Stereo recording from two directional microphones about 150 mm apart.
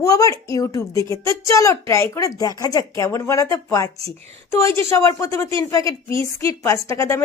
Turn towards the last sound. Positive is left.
turn(degrees=20)  # may be behind; listen again after turning